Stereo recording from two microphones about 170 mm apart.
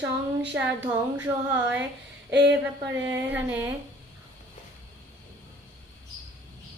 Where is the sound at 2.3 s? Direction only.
90° right.